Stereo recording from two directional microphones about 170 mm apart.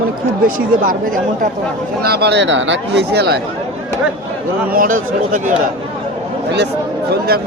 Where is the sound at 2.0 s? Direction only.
65° right (ahead or behind).